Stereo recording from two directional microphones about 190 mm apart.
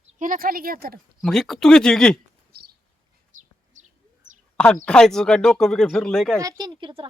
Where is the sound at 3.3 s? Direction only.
40° right (ahead or behind).